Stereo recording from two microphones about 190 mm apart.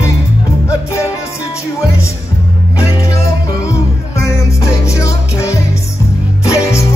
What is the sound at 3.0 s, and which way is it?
Music, 15° left (ahead or behind).